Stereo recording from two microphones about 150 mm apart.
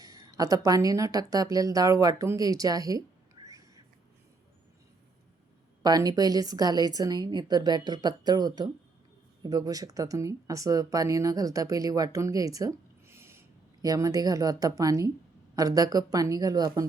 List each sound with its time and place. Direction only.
0.0 s speech: 25° right (ahead or behind)
5.8 s speech: 25° right (ahead or behind)